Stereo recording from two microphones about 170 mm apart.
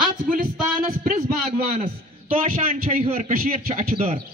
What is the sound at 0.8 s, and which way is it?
A man's voice, 55° right (ahead or behind).